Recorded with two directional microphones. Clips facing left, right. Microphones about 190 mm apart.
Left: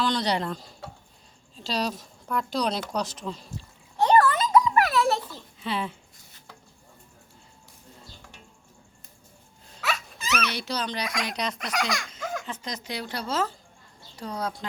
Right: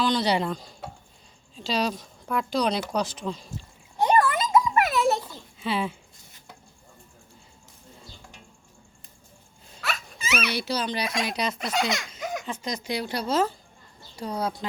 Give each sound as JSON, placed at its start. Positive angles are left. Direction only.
{"t": 0.0, "sound": "speech", "side_deg": -5}
{"t": 1.6, "sound": "speech", "side_deg": 0}
{"t": 3.9, "sound": "a sound", "side_deg": -15}
{"t": 5.6, "sound": "speech", "side_deg": -10}
{"t": 10.2, "sound": "speech", "side_deg": -10}
{"t": 11.0, "sound": "speech", "side_deg": -25}
{"t": 11.3, "sound": "speech", "side_deg": -5}
{"t": 11.5, "sound": "speech", "side_deg": -25}